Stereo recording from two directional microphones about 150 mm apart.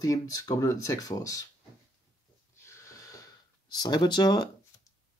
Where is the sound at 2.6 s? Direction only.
20° left (ahead or behind).